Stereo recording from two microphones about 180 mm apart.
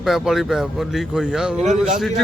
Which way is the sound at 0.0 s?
Centre (ahead or behind).